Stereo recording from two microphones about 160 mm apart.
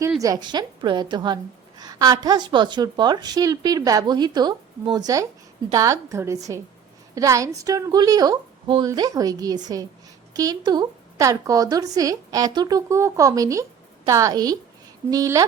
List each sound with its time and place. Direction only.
0.2 s a woman's voice: 25° right (ahead or behind)